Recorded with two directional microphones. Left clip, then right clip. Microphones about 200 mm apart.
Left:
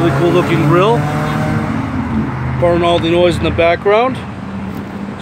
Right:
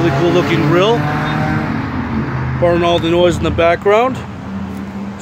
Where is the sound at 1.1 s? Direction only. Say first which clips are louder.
Even; 55° left (ahead or behind).